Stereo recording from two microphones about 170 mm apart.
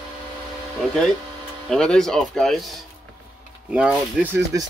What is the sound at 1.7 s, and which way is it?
Speech, 5° left (ahead or behind).